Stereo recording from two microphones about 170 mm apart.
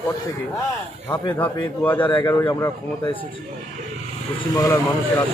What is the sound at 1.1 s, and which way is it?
Speech, 10° left (ahead or behind).